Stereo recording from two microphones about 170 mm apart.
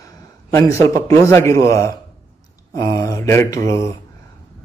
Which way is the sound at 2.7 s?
20° left (ahead or behind).